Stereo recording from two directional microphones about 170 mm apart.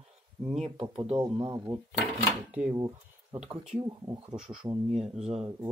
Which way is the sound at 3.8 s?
25° right (ahead or behind).